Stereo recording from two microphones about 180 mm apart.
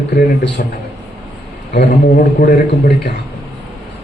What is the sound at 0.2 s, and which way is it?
Speech, 70° left (ahead or behind).